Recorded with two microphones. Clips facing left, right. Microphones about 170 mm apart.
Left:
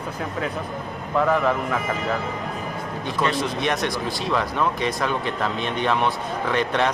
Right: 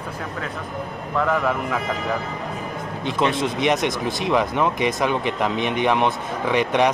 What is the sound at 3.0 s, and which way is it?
Speech, 20° right (ahead or behind).